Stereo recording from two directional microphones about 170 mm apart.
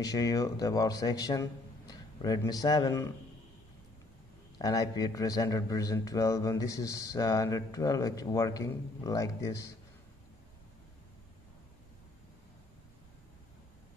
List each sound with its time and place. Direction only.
0.0 s a man's voice: 20° left (ahead or behind)
4.6 s a man's voice: 20° left (ahead or behind)